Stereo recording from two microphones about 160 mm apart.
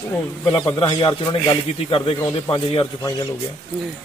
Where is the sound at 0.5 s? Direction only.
30° left (ahead or behind).